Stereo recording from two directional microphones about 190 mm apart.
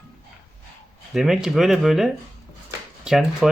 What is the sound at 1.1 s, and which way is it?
Speech, centre (ahead or behind).